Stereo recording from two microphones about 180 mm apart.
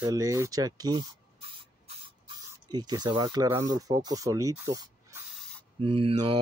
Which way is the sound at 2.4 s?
20° right (ahead or behind).